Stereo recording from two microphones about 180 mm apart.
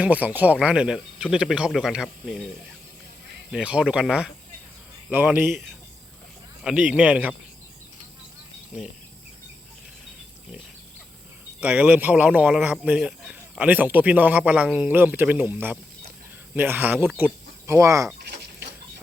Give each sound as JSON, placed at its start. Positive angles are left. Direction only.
{"t": 0.0, "sound": "speech", "side_deg": -10}
{"t": 3.5, "sound": "speech", "side_deg": -5}
{"t": 8.7, "sound": "speech", "side_deg": -5}
{"t": 11.6, "sound": "speech", "side_deg": -10}
{"t": 18.2, "sound": "a sound", "side_deg": -60}